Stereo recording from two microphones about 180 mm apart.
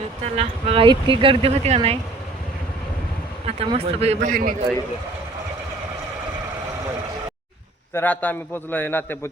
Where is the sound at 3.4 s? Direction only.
35° right (ahead or behind).